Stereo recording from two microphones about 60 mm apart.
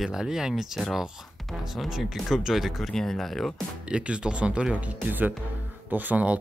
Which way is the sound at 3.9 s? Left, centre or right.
Centre.